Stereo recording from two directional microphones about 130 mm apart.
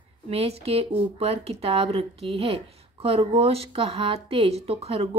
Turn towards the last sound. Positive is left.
turn(degrees=-50)  # may be behind; listen again after turning